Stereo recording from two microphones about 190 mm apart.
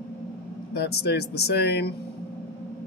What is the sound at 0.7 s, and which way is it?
Speech, 60° left (ahead or behind).